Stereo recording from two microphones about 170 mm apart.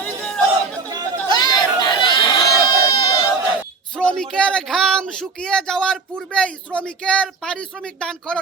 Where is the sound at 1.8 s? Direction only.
25° left (ahead or behind).